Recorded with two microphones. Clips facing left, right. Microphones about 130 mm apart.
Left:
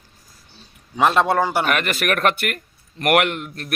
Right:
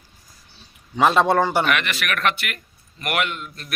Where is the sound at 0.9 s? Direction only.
Centre (ahead or behind).